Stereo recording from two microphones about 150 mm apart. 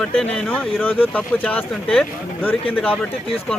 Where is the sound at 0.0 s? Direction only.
5° left (ahead or behind).